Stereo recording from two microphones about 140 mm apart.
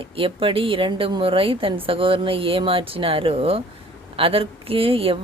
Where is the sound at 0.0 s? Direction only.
40° right (ahead or behind).